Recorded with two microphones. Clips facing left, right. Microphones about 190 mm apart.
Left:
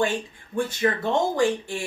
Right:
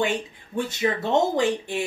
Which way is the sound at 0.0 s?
20° right (ahead or behind).